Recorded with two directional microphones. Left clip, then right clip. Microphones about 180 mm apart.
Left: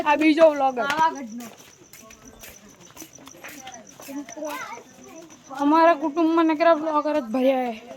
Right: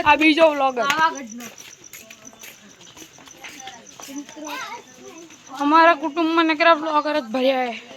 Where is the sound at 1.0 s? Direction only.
5° left (ahead or behind).